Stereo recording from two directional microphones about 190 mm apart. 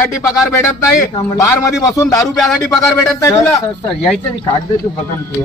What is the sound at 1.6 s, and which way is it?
A man's voice, 15° left (ahead or behind).